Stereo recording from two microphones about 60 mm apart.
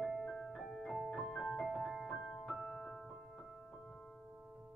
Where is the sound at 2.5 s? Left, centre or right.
Centre.